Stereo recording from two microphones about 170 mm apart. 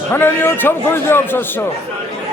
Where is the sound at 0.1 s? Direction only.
15° left (ahead or behind).